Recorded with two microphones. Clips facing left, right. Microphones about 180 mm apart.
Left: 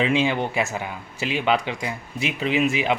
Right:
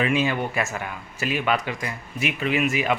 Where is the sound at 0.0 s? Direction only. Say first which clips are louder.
Left 2 dB; 20° left (ahead or behind).